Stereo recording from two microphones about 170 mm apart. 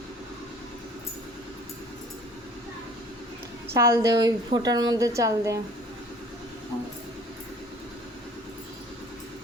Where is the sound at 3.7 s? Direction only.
15° right (ahead or behind).